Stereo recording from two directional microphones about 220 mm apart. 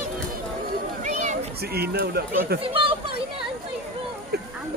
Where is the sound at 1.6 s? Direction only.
45° right (ahead or behind).